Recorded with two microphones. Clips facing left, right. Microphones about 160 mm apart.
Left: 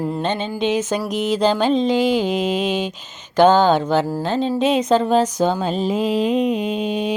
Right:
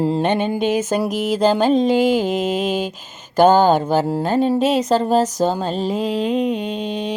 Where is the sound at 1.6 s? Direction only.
45° right (ahead or behind).